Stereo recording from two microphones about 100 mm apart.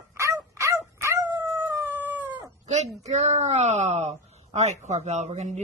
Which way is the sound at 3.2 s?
90° right.